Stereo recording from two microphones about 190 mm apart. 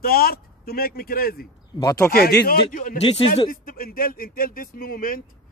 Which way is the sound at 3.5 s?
50° left (ahead or behind).